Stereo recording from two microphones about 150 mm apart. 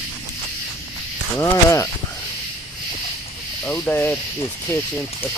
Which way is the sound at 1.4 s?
20° left (ahead or behind).